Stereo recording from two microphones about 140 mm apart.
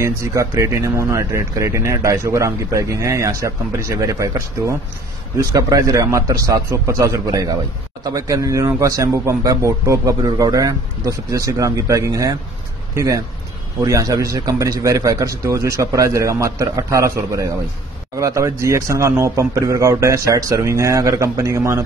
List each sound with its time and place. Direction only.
0.0 s speech: 20° right (ahead or behind)